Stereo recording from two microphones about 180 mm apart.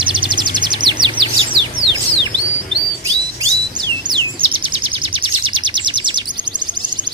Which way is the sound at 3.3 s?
25° right (ahead or behind).